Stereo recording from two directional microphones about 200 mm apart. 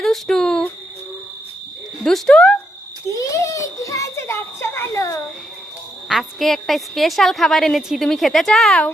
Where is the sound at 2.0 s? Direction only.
5° left (ahead or behind).